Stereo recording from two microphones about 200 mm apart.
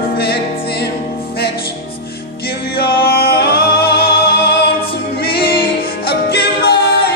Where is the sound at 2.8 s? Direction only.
50° left (ahead or behind).